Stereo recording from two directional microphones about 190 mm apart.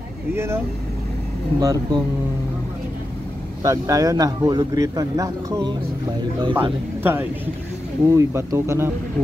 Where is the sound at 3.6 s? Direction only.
15° right (ahead or behind).